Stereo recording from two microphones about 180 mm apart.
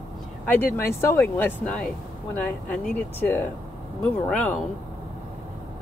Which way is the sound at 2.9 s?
10° left (ahead or behind).